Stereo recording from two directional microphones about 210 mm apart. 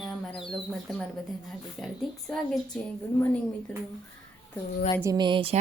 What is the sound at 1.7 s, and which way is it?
A woman's voice, centre (ahead or behind).